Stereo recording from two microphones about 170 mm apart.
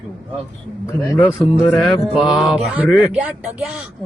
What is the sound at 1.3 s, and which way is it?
Speech, 5° right (ahead or behind).